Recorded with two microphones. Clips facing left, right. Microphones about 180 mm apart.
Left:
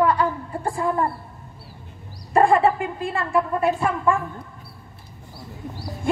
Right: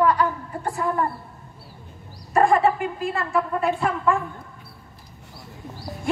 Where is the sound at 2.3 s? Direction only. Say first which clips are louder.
Left 1 dB; 30° left (ahead or behind).